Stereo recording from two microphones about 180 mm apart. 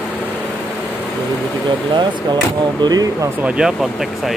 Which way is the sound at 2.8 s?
20° right (ahead or behind).